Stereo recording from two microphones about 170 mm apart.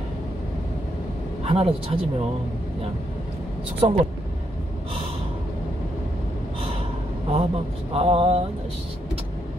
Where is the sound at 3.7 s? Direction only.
30° right (ahead or behind).